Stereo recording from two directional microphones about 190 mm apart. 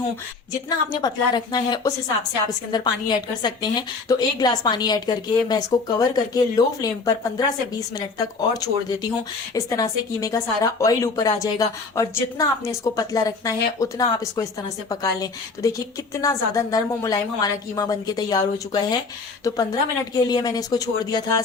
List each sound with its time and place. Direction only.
0.9 s a woman's voice: 20° left (ahead or behind)